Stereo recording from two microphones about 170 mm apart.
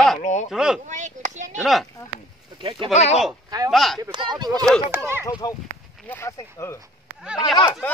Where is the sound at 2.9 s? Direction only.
40° left (ahead or behind).